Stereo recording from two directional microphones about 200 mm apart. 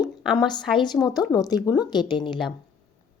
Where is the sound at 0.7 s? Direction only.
20° left (ahead or behind).